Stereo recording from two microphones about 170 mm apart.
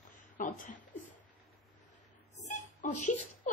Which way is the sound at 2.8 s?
45° left (ahead or behind).